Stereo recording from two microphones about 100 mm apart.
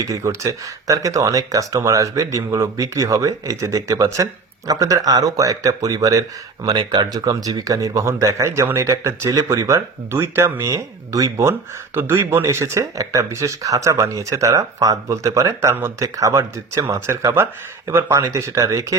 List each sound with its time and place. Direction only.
0.0 s speech: 30° right (ahead or behind)